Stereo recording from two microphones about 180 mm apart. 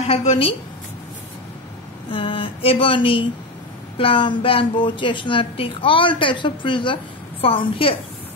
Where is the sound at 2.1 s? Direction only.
30° left (ahead or behind).